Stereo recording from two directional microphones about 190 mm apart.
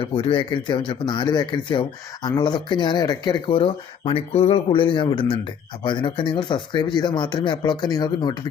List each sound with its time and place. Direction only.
0.0 s speech: 30° left (ahead or behind)